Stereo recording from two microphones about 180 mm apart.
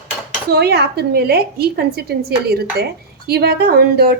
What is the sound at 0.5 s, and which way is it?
A woman's voice, 65° right (ahead or behind).